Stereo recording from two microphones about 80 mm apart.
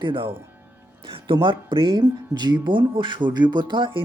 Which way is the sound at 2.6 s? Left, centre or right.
Right.